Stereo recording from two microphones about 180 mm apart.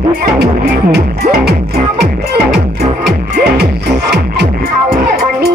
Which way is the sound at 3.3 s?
65° right (ahead or behind).